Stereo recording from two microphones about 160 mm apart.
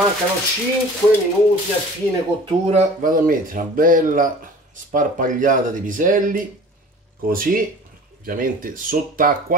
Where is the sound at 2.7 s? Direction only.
50° right (ahead or behind).